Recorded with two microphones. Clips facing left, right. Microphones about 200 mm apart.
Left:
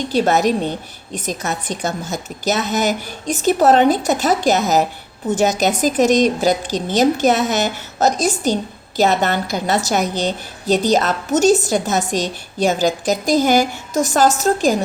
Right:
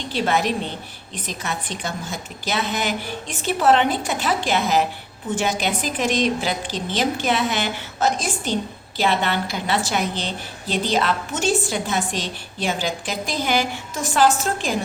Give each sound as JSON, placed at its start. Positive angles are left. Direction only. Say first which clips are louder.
{"t": 0.1, "sound": "a woman's voice", "louder": "left 5 dB", "side_deg": 45}